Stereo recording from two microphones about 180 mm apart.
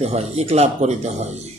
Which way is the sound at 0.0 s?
35° right (ahead or behind).